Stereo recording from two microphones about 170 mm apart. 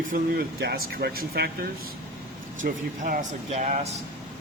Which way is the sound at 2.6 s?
50° right (ahead or behind).